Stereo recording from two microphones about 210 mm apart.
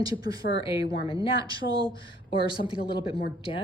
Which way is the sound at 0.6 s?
25° left (ahead or behind).